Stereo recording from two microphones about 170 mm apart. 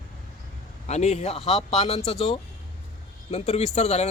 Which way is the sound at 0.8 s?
40° left (ahead or behind).